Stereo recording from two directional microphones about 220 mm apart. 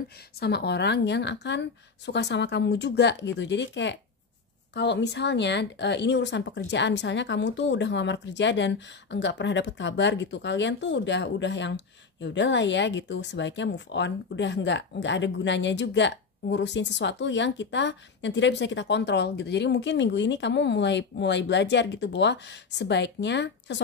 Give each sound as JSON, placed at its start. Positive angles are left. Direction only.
{"t": 0.4, "sound": "speech", "side_deg": 50}